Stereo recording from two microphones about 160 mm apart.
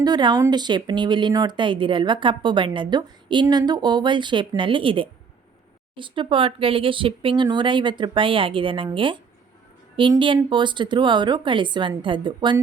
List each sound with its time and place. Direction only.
0.0 s a woman's voice: 25° right (ahead or behind)